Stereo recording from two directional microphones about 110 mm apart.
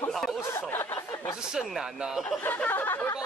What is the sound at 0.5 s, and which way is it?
Speech, 20° left (ahead or behind).